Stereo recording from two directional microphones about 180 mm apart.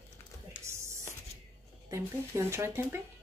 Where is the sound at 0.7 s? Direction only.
15° right (ahead or behind).